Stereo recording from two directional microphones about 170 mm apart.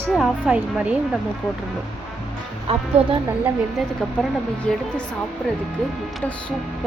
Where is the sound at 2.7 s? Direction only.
35° right (ahead or behind).